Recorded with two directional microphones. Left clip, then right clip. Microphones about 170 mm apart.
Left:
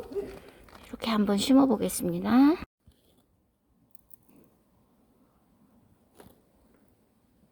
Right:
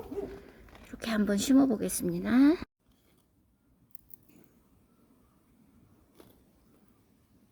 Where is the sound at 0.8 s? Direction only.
15° left (ahead or behind).